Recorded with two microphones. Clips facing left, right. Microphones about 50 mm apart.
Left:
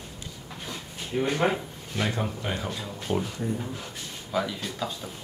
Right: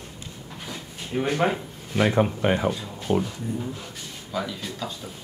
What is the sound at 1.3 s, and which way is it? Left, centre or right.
Speech, centre.